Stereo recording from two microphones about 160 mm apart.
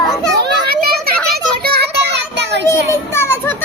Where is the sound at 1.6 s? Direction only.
85° right.